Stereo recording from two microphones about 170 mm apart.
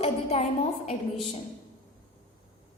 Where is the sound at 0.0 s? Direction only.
35° left (ahead or behind).